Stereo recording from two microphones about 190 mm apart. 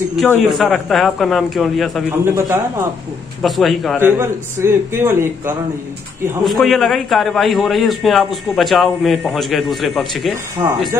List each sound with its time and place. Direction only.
0.5 s a man's voice: centre (ahead or behind)
2.2 s a man's voice: 10° right (ahead or behind)
3.4 s a man's voice: centre (ahead or behind)
4.0 s a man's voice: 10° right (ahead or behind)
6.4 s a man's voice: centre (ahead or behind)